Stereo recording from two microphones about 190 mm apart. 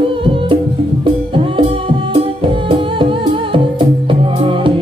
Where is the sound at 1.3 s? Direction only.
25° right (ahead or behind).